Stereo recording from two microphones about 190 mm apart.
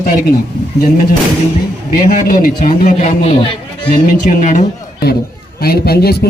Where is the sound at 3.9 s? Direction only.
45° left (ahead or behind).